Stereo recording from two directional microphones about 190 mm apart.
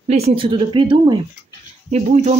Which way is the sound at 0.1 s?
30° right (ahead or behind).